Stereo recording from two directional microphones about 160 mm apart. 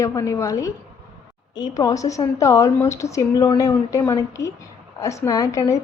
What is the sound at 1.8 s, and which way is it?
A woman's voice, 20° left (ahead or behind).